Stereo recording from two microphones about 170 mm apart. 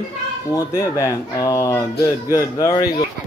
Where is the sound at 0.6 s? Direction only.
15° left (ahead or behind).